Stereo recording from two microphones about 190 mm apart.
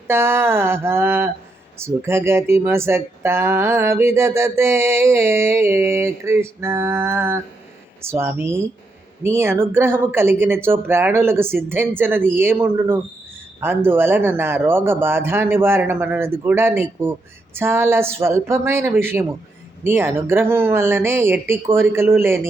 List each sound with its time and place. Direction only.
0.1 s speech: 10° right (ahead or behind)